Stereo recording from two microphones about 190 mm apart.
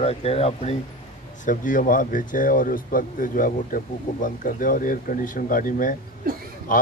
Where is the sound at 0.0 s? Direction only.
30° left (ahead or behind).